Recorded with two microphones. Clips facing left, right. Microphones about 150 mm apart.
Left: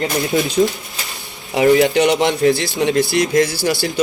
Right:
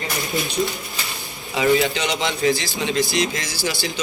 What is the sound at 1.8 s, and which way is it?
Speech, 50° left (ahead or behind).